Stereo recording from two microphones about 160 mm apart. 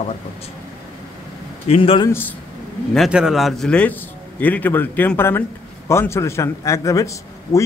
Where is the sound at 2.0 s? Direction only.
15° left (ahead or behind).